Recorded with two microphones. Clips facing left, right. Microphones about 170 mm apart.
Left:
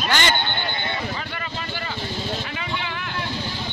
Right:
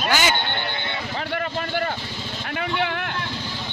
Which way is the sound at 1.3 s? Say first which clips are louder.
Right 6 dB; 60° right (ahead or behind).